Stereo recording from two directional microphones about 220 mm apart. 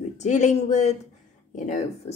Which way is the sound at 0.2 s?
30° left (ahead or behind).